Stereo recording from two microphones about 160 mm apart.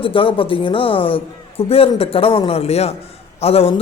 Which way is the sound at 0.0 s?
35° left (ahead or behind).